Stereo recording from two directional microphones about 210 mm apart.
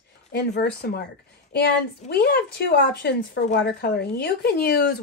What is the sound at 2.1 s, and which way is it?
Speech, 50° left (ahead or behind).